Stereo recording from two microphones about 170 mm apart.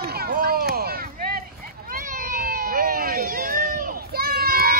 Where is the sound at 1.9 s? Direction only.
55° right (ahead or behind).